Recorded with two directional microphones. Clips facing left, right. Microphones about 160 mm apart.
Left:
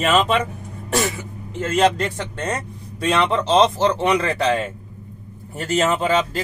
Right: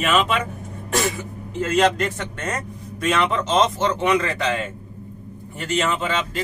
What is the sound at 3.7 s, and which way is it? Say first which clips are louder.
Speech: left 2 dB; 30° left (ahead or behind).